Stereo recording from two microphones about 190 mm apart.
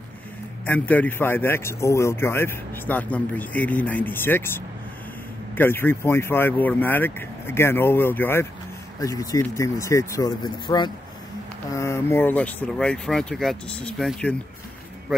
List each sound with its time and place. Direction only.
0.7 s speech: 10° left (ahead or behind)